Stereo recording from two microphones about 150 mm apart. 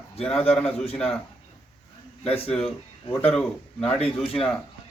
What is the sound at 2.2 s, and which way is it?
Speech, 40° left (ahead or behind).